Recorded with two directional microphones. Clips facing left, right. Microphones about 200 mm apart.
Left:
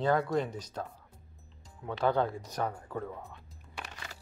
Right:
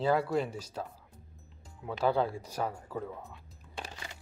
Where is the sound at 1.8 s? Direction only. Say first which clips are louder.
Even; 5° right (ahead or behind).